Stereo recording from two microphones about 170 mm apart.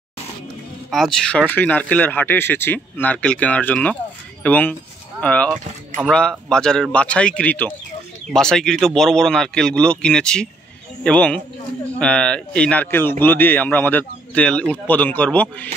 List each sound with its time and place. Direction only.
0.8 s a man's voice: centre (ahead or behind)